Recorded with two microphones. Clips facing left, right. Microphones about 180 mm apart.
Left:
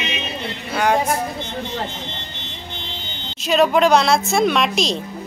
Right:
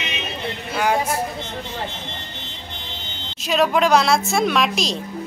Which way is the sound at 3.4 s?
Centre (ahead or behind).